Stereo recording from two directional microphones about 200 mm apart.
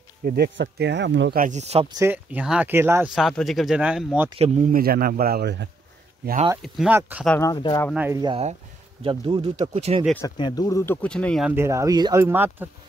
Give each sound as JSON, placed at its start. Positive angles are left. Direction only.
{"t": 0.2, "sound": "speech", "side_deg": -55}
{"t": 1.4, "sound": "speech", "side_deg": -35}
{"t": 2.0, "sound": "speech", "side_deg": -10}
{"t": 4.4, "sound": "a man's voice", "side_deg": -35}
{"t": 6.6, "sound": "speech", "side_deg": 0}
{"t": 7.2, "sound": "speech", "side_deg": 10}
{"t": 7.5, "sound": "speech", "side_deg": 25}
{"t": 7.9, "sound": "speech", "side_deg": -10}
{"t": 8.2, "sound": "speech", "side_deg": -25}
{"t": 10.2, "sound": "speech", "side_deg": 20}
{"t": 11.5, "sound": "speech", "side_deg": -15}